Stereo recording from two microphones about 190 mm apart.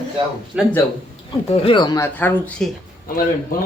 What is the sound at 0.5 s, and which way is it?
Speech, 5° right (ahead or behind).